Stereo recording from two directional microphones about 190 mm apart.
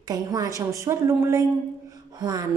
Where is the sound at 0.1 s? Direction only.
20° right (ahead or behind).